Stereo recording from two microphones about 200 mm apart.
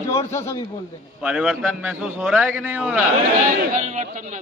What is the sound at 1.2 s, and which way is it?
A man's voice, 5° right (ahead or behind).